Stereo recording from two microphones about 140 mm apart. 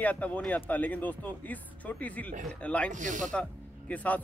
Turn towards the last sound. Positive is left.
turn(degrees=10)  # may be behind; listen again after turning